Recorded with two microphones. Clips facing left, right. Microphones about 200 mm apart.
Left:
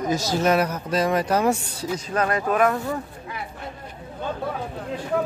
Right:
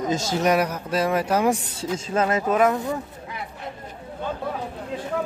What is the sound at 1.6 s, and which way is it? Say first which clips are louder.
Speech: even; 25° right (ahead or behind).